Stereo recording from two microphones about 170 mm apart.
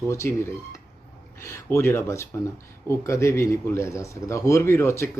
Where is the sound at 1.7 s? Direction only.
15° left (ahead or behind).